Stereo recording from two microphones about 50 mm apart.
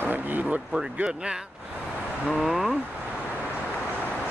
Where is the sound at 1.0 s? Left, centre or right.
Centre.